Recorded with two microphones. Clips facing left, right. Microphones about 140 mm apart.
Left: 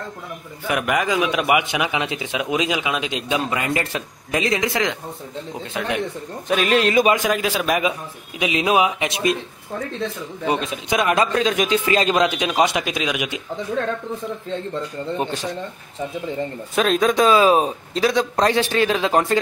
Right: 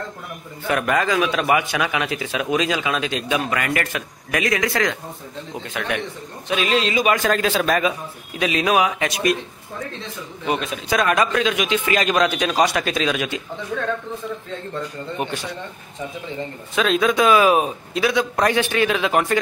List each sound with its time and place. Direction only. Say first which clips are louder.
0.7 s a man's voice: right 1 dB; 15° left (ahead or behind)
6.5 s speech: left 3 dB; 50° left (ahead or behind)
7.1 s a man's voice: even; 10° left (ahead or behind)
10.4 s a man's voice: left 1 dB; 25° left (ahead or behind)
11.3 s a man's voice: left 1 dB; 40° left (ahead or behind); by 13.4 s 15° left (ahead or behind)
16.7 s a man's voice: left 1 dB; 40° left (ahead or behind)